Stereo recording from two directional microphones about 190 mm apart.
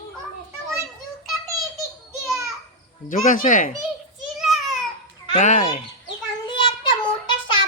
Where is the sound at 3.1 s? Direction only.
45° left (ahead or behind).